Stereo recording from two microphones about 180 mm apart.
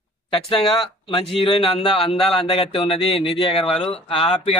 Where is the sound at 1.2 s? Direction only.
30° left (ahead or behind).